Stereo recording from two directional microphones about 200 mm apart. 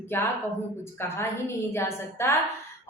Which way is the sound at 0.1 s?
10° left (ahead or behind).